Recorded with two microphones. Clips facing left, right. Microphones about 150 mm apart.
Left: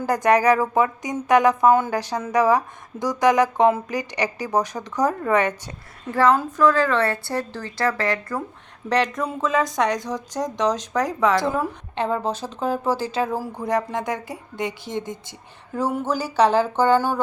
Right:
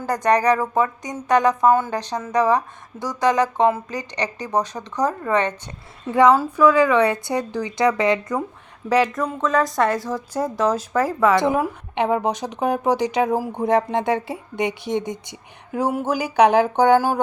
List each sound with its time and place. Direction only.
0.0 s speech: 10° left (ahead or behind)
6.1 s speech: 15° right (ahead or behind)
8.9 s a woman's voice: 10° right (ahead or behind)